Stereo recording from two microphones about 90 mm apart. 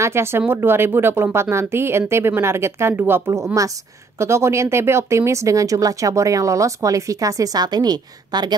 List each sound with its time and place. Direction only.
0.0 s speech: 30° right (ahead or behind); by 8.5 s 50° right (ahead or behind)